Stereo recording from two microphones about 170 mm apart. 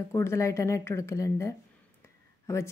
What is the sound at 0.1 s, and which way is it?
A woman's voice, 15° left (ahead or behind).